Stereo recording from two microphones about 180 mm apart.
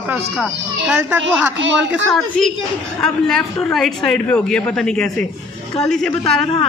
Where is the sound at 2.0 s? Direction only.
5° left (ahead or behind).